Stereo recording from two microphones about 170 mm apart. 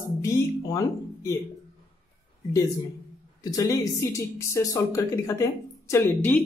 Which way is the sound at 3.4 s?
20° left (ahead or behind).